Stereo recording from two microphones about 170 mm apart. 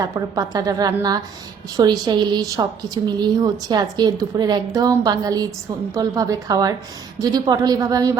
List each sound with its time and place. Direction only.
0.0 s a woman's voice: 20° right (ahead or behind)